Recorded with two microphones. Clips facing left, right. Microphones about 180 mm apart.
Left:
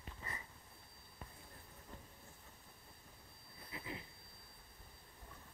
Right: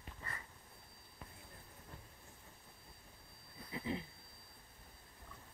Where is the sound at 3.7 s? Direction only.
25° right (ahead or behind).